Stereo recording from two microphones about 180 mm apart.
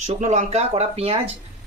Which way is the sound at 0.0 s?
40° right (ahead or behind).